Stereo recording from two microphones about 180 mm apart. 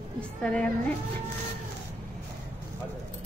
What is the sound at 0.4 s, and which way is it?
Speech, 5° left (ahead or behind).